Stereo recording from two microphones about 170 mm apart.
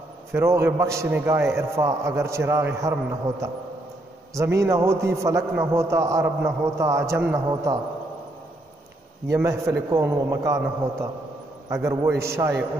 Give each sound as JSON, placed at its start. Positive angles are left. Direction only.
{"t": 0.3, "sound": "a man's voice", "side_deg": -15}
{"t": 9.3, "sound": "a man's voice", "side_deg": -20}